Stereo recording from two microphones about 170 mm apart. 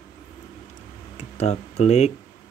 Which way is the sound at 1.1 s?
40° left (ahead or behind).